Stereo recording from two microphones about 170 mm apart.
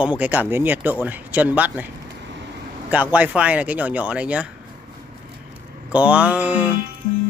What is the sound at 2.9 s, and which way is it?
Speech, 10° right (ahead or behind).